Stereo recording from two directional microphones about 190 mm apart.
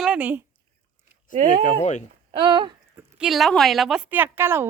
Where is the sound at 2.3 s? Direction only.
25° right (ahead or behind).